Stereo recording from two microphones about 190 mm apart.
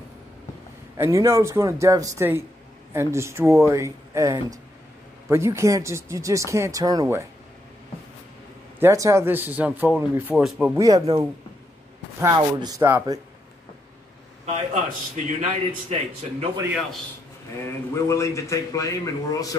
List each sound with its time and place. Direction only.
0.9 s speech: 15° right (ahead or behind)
8.7 s speech: 15° right (ahead or behind)
10.8 s speech: 20° right (ahead or behind)
14.4 s a man's voice: 35° right (ahead or behind)
17.6 s a man's voice: 15° left (ahead or behind)